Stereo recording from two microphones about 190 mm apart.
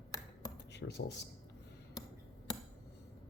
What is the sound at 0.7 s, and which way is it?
Speech, 65° left (ahead or behind).